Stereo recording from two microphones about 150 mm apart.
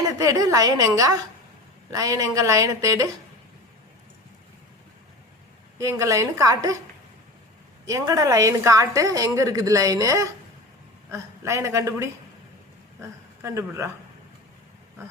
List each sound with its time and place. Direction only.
0.2 s a woman's voice: 20° right (ahead or behind)
5.8 s a woman's voice: 20° right (ahead or behind)
7.9 s a woman's voice: 25° right (ahead or behind)